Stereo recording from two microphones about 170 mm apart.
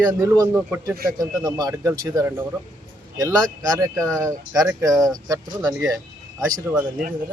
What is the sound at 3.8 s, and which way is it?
Speech, 20° right (ahead or behind).